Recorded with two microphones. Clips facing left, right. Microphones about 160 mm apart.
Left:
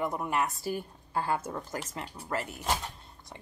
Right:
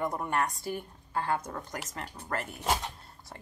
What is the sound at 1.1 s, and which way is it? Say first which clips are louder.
Speech: left 1 dB; 30° left (ahead or behind).